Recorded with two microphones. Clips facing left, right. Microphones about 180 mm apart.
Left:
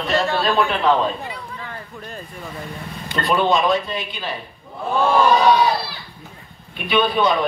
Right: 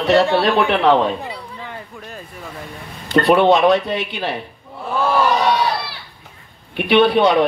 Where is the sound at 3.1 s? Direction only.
65° right (ahead or behind).